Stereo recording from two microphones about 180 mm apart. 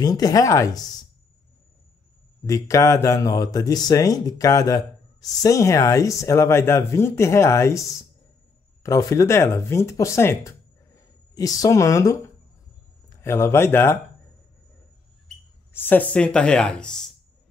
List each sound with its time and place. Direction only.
0.0 s speech: 20° left (ahead or behind)
2.4 s speech: 20° left (ahead or behind)
8.8 s speech: 15° left (ahead or behind)
13.2 s speech: 15° left (ahead or behind)
15.7 s speech: 10° left (ahead or behind)